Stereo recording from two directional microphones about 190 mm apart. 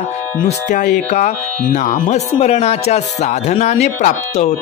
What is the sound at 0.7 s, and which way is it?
Speech, 40° left (ahead or behind).